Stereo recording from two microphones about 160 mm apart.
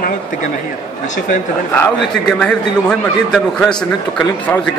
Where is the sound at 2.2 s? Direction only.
5° left (ahead or behind).